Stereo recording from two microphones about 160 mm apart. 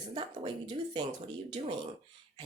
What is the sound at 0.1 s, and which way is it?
Speech, 30° right (ahead or behind).